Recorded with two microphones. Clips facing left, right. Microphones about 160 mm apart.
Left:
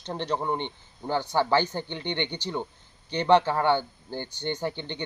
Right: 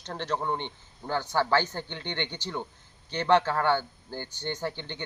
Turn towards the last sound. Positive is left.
turn(degrees=15)  # may be behind; listen again after turning